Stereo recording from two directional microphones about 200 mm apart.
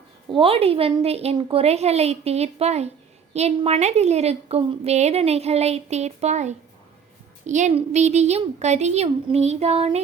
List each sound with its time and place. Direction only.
0.3 s a woman's voice: 25° right (ahead or behind)